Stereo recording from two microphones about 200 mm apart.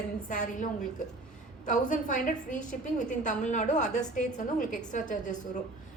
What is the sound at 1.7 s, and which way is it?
A woman's voice, 40° left (ahead or behind).